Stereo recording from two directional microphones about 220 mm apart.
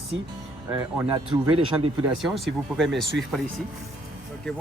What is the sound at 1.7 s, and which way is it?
Speech, 10° right (ahead or behind).